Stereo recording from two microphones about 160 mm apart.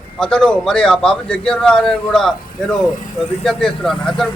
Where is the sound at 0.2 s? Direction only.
5° left (ahead or behind).